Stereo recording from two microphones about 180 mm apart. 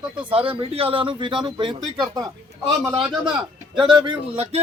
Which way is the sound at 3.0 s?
Centre (ahead or behind).